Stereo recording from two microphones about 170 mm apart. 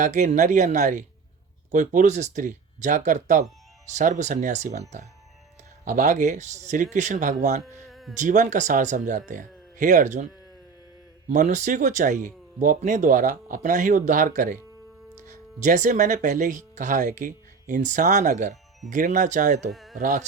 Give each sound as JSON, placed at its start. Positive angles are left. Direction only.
{"t": 0.0, "sound": "speech", "side_deg": -45}
{"t": 7.9, "sound": "a sound", "side_deg": 0}
{"t": 8.2, "sound": "speech", "side_deg": -45}
{"t": 11.3, "sound": "speech", "side_deg": -45}
{"t": 15.6, "sound": "speech", "side_deg": -45}
{"t": 19.7, "sound": "a sound", "side_deg": 0}
{"t": 20.0, "sound": "speech", "side_deg": -50}